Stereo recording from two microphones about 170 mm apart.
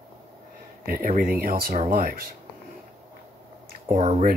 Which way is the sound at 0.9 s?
55° right (ahead or behind).